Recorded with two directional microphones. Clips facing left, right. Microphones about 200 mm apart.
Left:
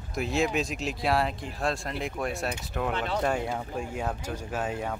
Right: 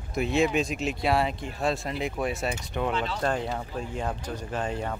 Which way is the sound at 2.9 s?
55° left (ahead or behind).